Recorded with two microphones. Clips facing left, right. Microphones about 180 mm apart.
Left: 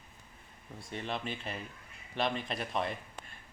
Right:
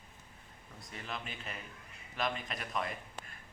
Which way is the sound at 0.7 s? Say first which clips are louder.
Left 6 dB; 30° left (ahead or behind).